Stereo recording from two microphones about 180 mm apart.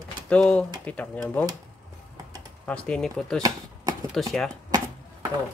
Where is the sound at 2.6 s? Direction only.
5° left (ahead or behind).